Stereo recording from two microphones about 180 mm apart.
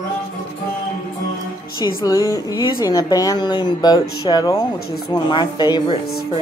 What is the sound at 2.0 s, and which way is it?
Speech, 20° left (ahead or behind).